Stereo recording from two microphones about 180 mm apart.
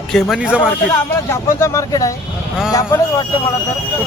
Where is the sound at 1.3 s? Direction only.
15° left (ahead or behind).